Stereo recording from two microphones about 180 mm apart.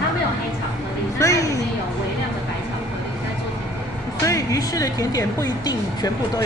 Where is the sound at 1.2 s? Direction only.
20° left (ahead or behind).